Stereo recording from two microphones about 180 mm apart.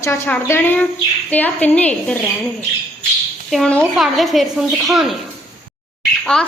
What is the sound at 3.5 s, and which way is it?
Speech, 5° left (ahead or behind).